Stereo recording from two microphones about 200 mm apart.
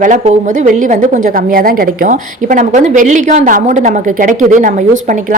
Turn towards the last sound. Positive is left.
turn(degrees=-40)  # may be behind; listen again after turning